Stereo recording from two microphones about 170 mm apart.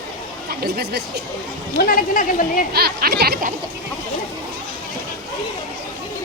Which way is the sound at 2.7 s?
65° right (ahead or behind).